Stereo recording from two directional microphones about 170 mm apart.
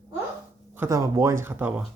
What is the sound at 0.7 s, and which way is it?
Speech, 15° right (ahead or behind).